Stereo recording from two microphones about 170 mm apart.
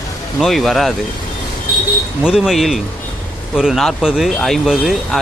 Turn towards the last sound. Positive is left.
turn(degrees=0)  # may be behind; listen again after turning